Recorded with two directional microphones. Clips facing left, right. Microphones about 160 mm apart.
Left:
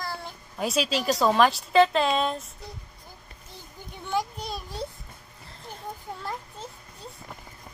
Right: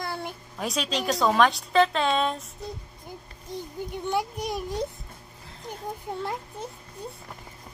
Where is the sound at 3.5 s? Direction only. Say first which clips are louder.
Right 12 dB; 15° right (ahead or behind).